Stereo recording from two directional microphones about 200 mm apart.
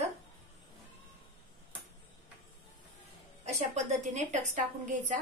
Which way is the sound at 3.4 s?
35° right (ahead or behind).